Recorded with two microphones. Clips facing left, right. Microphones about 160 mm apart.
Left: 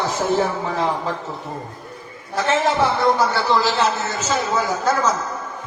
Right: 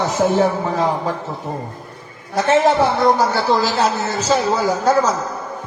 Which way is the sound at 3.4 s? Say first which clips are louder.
Right 2 dB; 40° right (ahead or behind).